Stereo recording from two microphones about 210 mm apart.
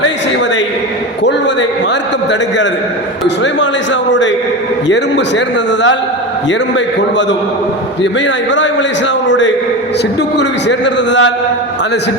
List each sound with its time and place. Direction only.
3.2 s a man's voice: 60° left (ahead or behind)
4.9 s a man's voice: 55° left (ahead or behind)
6.5 s a man's voice: 60° left (ahead or behind)
9.2 s a man's voice: 60° left (ahead or behind)